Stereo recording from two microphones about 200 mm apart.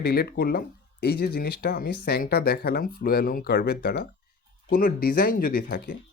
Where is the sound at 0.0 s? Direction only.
55° left (ahead or behind).